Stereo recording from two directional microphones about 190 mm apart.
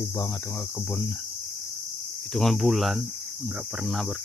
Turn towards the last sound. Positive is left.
turn(degrees=0)  # may be behind; listen again after turning